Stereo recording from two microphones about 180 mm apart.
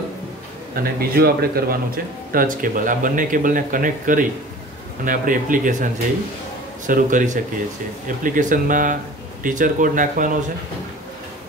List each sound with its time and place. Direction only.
0.9 s speech: 55° right (ahead or behind)
6.9 s speech: 45° right (ahead or behind)